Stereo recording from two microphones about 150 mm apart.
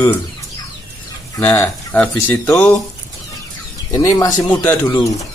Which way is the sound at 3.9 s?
20° left (ahead or behind).